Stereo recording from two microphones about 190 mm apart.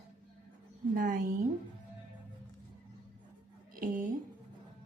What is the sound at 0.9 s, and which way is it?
Speech, 45° right (ahead or behind).